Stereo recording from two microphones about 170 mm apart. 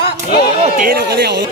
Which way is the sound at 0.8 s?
65° right (ahead or behind).